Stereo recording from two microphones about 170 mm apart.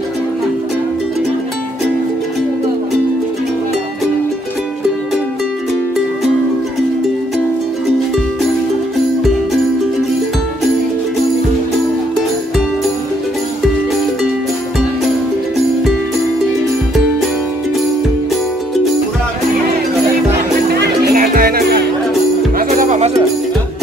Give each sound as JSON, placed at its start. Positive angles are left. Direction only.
{"t": 21.1, "sound": "music", "side_deg": -55}
{"t": 22.6, "sound": "music", "side_deg": -50}